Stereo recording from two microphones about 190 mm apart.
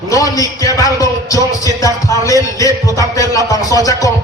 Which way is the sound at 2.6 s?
15° left (ahead or behind).